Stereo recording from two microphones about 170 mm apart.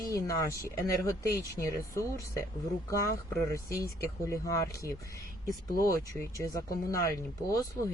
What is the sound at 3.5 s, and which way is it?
Speech, 20° left (ahead or behind).